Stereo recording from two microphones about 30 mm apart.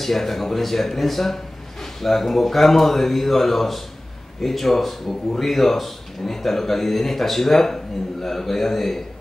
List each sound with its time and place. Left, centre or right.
0.0 s speech: centre